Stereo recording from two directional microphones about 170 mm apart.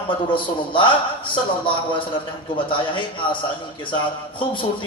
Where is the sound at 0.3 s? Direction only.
30° left (ahead or behind).